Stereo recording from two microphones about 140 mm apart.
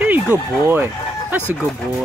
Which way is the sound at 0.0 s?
15° right (ahead or behind).